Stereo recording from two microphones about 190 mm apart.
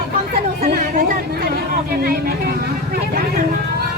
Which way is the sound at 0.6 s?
50° right (ahead or behind).